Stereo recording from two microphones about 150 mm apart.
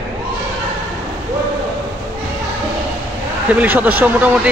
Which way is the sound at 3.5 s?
10° right (ahead or behind).